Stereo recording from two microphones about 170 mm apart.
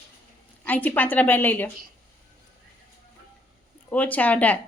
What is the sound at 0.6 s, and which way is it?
Speech, 10° left (ahead or behind).